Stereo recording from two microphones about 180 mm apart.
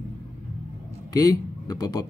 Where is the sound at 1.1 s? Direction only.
20° left (ahead or behind).